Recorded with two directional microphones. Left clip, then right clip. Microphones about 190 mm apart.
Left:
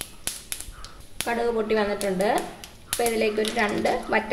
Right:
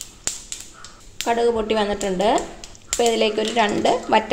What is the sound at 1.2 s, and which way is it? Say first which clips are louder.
Speech: right 5 dB; 35° right (ahead or behind).